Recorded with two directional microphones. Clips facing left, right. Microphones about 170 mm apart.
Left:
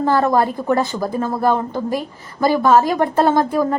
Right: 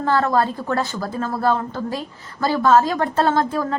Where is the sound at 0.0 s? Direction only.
15° left (ahead or behind).